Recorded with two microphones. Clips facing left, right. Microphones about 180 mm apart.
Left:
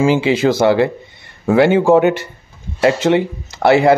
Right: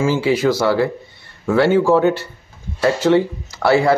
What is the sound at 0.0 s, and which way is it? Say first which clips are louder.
Speech: left 3 dB; 20° left (ahead or behind).